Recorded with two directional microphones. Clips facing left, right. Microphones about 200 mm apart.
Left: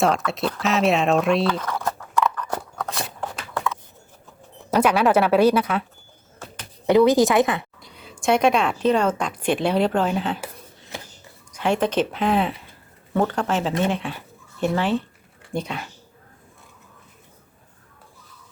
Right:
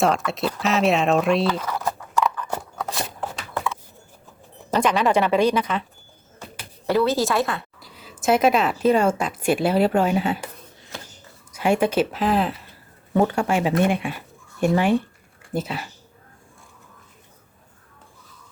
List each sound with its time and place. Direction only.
0.0 s a sound: centre (ahead or behind)
4.7 s speech: 10° left (ahead or behind)
6.8 s speech: 15° left (ahead or behind)
7.8 s speech: centre (ahead or behind)
11.5 s speech: 10° right (ahead or behind)